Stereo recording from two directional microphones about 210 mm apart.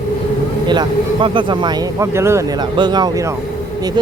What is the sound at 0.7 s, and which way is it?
A man's voice, 20° right (ahead or behind).